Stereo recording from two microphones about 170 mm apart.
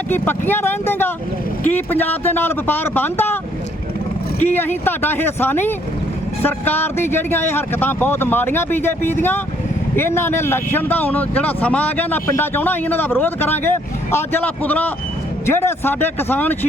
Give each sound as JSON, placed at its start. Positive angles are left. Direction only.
{"t": 0.1, "sound": "speech", "side_deg": 10}
{"t": 4.4, "sound": "speech", "side_deg": 10}